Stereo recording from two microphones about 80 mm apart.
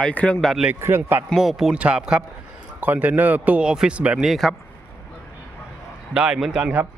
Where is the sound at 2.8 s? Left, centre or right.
Right.